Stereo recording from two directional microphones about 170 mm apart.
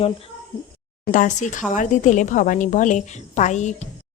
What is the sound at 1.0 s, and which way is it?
A woman's voice, 50° left (ahead or behind).